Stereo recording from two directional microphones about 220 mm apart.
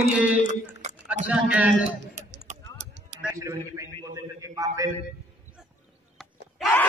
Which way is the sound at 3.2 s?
15° right (ahead or behind).